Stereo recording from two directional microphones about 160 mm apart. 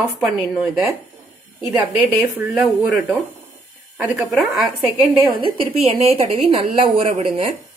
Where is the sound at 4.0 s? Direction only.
5° right (ahead or behind).